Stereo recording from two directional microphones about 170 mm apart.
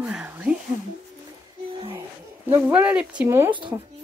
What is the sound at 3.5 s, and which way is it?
Speech, 30° right (ahead or behind).